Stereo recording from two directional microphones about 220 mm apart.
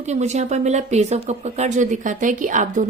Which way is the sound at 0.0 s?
30° right (ahead or behind).